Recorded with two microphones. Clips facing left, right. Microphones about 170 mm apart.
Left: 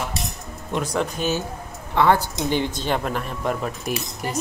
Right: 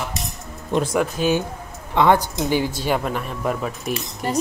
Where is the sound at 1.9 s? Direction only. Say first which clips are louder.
Right 2 dB; 15° right (ahead or behind).